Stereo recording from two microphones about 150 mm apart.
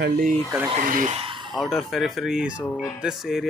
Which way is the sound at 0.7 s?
60° right (ahead or behind).